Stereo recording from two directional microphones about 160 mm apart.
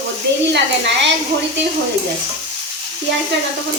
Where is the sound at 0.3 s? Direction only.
90° right.